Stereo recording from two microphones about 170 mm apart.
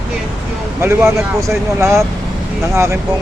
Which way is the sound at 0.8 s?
15° right (ahead or behind).